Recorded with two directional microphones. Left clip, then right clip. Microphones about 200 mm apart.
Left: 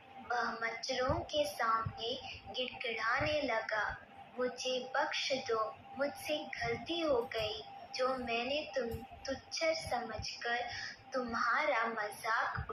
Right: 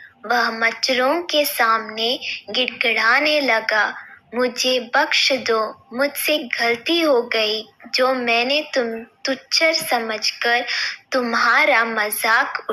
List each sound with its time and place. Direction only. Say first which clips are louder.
0.3 s a woman's voice: right 18 dB; 50° right (ahead or behind)